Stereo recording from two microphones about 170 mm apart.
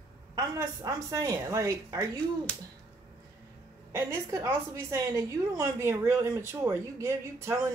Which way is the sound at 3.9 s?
15° right (ahead or behind).